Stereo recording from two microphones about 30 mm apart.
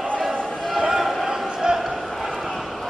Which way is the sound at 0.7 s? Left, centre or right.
Centre.